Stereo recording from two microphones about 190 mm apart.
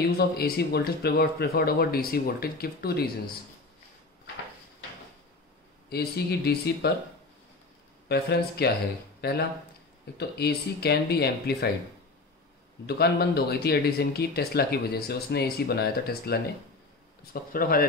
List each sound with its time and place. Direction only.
0.2 s speech: 55° left (ahead or behind)
5.9 s speech: 55° left (ahead or behind)
8.1 s speech: 60° left (ahead or behind)
12.8 s speech: 55° left (ahead or behind)